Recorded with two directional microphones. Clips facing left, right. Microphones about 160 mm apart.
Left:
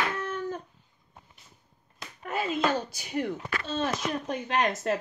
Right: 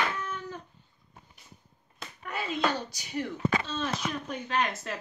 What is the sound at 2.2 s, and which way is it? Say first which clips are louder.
Speech: left 2 dB; 45° left (ahead or behind).